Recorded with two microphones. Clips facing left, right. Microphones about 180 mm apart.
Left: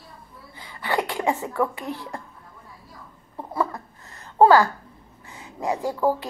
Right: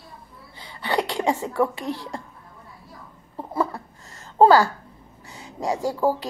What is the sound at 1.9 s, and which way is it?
Speech, 90° right.